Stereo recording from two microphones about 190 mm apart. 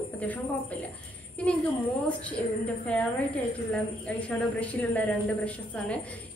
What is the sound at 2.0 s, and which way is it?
A woman's voice, 5° left (ahead or behind).